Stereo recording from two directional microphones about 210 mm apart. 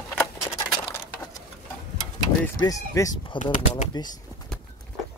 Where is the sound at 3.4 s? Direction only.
35° left (ahead or behind).